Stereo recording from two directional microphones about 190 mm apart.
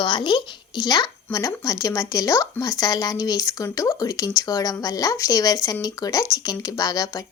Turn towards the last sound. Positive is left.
turn(degrees=20)  # may be behind; listen again after turning